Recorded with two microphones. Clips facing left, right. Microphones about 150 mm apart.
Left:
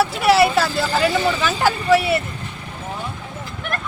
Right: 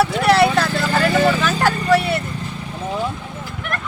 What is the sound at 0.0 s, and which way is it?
Vehicle, 5° left (ahead or behind).